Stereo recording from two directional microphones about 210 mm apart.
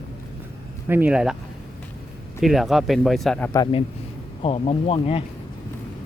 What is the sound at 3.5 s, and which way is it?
Speech, 20° left (ahead or behind).